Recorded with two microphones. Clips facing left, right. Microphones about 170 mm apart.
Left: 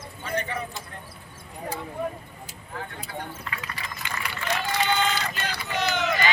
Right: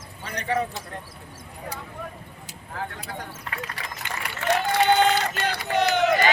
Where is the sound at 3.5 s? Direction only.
65° right (ahead or behind).